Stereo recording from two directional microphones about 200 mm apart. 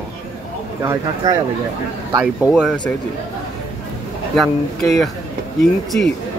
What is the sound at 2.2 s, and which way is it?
Speech, 5° right (ahead or behind).